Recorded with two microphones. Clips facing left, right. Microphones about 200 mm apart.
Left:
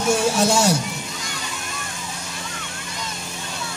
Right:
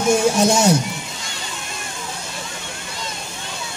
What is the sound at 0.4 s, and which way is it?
Speech, 20° right (ahead or behind).